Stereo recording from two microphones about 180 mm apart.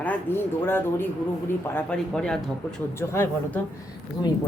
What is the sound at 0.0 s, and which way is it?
A woman's voice, 10° left (ahead or behind).